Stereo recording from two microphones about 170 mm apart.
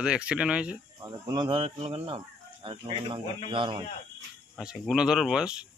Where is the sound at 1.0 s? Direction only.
25° right (ahead or behind).